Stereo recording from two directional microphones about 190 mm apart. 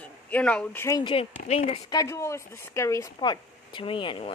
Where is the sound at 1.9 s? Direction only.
15° left (ahead or behind).